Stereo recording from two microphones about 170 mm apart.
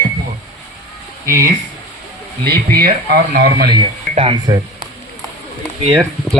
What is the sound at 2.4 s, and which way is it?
Speech, 65° right (ahead or behind).